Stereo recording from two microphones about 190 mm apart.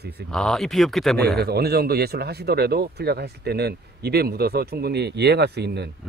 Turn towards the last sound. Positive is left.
turn(degrees=-60)  # may be behind; listen again after turning